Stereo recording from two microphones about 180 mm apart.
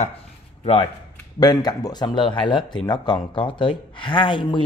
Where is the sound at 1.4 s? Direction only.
25° left (ahead or behind).